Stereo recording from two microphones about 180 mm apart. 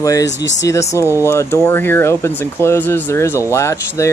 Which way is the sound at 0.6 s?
15° left (ahead or behind).